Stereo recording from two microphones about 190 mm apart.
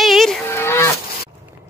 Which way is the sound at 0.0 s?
Centre (ahead or behind).